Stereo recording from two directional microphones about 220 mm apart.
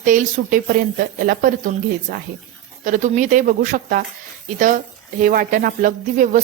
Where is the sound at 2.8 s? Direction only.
35° right (ahead or behind).